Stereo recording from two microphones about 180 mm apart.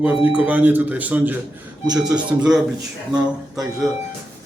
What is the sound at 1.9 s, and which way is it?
Speech, 20° right (ahead or behind).